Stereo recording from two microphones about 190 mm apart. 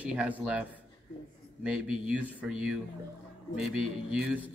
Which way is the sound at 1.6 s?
5° right (ahead or behind).